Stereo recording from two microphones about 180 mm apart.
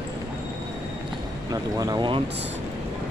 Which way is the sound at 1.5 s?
20° right (ahead or behind).